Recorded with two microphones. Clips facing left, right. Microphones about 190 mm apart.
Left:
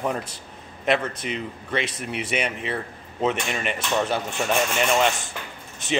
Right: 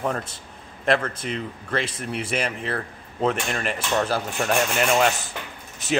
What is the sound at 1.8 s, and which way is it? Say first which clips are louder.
Speech: even; 30° right (ahead or behind).